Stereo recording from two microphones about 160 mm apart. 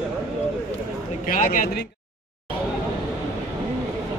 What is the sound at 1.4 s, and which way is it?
Speech, 55° left (ahead or behind).